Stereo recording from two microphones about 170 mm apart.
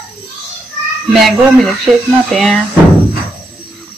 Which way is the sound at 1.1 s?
Centre (ahead or behind).